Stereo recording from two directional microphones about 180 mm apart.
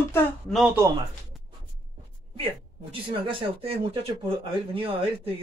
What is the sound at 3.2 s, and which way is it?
Speech, 30° right (ahead or behind).